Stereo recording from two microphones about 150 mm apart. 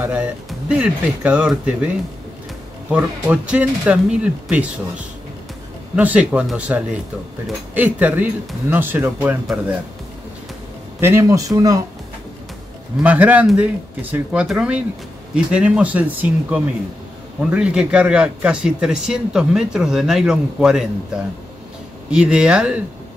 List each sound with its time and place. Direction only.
0.0 s speech: 10° right (ahead or behind)
2.9 s speech: 5° right (ahead or behind)
11.0 s speech: 15° right (ahead or behind)
13.0 s a man's voice: 10° right (ahead or behind)
22.1 s speech: 5° right (ahead or behind)